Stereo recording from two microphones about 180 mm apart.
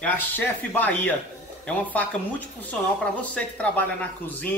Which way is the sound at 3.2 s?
5° left (ahead or behind).